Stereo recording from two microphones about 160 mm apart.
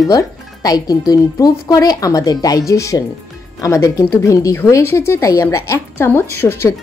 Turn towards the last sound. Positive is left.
turn(degrees=15)  # may be behind; listen again after turning